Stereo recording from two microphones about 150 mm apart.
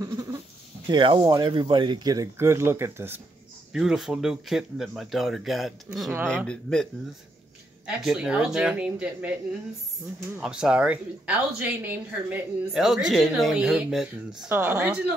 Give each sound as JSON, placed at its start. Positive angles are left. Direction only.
{"t": 0.8, "sound": "speech", "side_deg": -30}
{"t": 3.7, "sound": "a woman's voice", "side_deg": -5}
{"t": 10.4, "sound": "a woman's voice", "side_deg": -5}
{"t": 14.5, "sound": "speech", "side_deg": -15}